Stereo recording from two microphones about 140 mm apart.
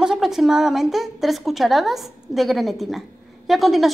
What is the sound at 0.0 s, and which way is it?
A woman's voice, 5° right (ahead or behind).